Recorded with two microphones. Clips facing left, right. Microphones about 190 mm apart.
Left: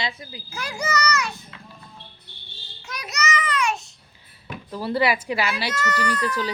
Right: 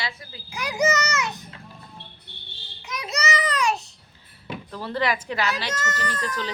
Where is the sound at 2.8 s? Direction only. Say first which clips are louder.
Right 2 dB; 20° right (ahead or behind).